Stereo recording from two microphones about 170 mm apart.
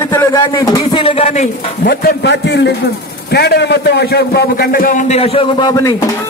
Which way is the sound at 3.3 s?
75° left (ahead or behind).